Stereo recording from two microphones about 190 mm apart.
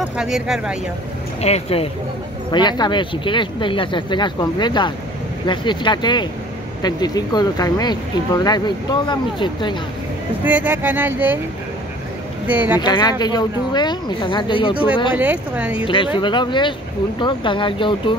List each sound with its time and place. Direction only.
0.2 s speech: 5° right (ahead or behind)
1.4 s speech: 30° left (ahead or behind)
10.4 s speech: 10° right (ahead or behind)
12.4 s speech: 10° right (ahead or behind)
12.8 s speech: 20° left (ahead or behind)
15.1 s speech: 10° right (ahead or behind)
15.8 s speech: 25° left (ahead or behind)